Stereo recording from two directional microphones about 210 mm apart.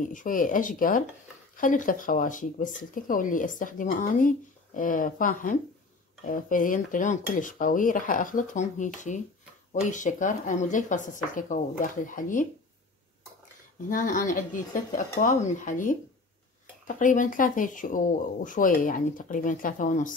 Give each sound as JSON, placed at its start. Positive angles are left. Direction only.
{"t": 0.0, "sound": "speech", "side_deg": 40}
{"t": 13.8, "sound": "speech", "side_deg": 40}